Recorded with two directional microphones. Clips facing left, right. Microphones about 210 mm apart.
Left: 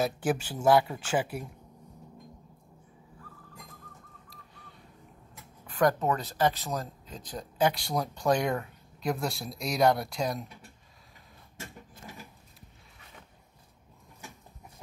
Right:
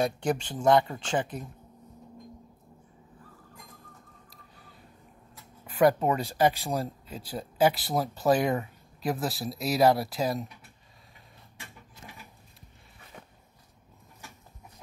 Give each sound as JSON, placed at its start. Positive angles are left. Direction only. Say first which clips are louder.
{"t": 0.0, "sound": "speech", "louder": "right 1 dB", "side_deg": 5}
{"t": 5.7, "sound": "speech", "louder": "right 3 dB", "side_deg": -10}
{"t": 11.5, "sound": "printer", "louder": "left 6 dB", "side_deg": 45}